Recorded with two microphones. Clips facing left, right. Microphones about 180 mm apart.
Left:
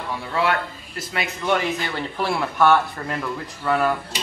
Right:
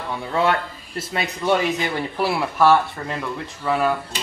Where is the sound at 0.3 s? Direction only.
25° right (ahead or behind).